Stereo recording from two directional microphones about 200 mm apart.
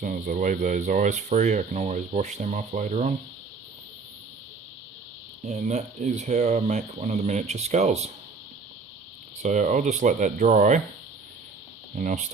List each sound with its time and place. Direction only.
0.0 s speech: 40° right (ahead or behind)
5.5 s speech: 35° right (ahead or behind)
9.4 s speech: 40° right (ahead or behind)
11.9 s speech: 40° right (ahead or behind)